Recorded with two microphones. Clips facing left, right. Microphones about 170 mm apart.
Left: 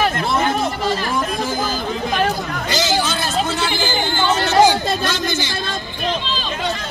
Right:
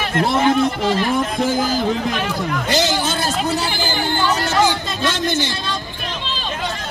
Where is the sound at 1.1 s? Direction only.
70° right (ahead or behind).